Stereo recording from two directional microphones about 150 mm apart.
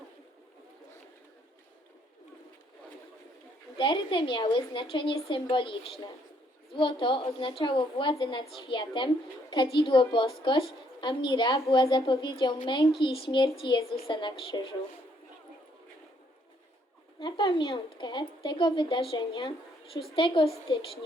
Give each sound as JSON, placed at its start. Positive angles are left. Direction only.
{"t": 3.8, "sound": "a woman's voice", "side_deg": 35}
{"t": 17.2, "sound": "a woman's voice", "side_deg": 30}